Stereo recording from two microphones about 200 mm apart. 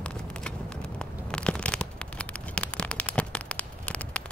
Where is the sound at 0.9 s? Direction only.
5° left (ahead or behind).